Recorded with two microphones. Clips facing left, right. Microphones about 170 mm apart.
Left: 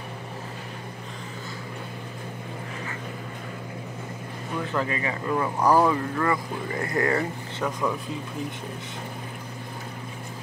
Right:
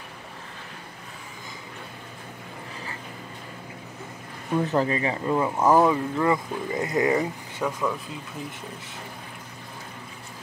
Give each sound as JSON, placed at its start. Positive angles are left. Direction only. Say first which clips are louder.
{"t": 4.6, "sound": "speech", "louder": "right 5 dB", "side_deg": -30}